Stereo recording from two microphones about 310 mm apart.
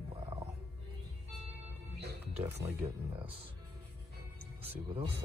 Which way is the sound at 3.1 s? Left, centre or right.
Centre.